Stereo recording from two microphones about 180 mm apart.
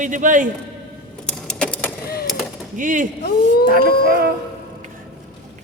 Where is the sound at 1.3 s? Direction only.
5° left (ahead or behind).